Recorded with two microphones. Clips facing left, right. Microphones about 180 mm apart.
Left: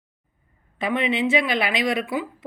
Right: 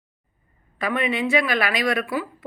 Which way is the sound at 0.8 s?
20° left (ahead or behind).